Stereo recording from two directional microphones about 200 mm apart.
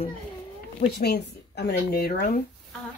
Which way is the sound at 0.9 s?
55° left (ahead or behind).